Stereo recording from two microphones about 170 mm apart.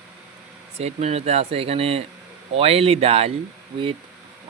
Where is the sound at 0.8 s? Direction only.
40° right (ahead or behind).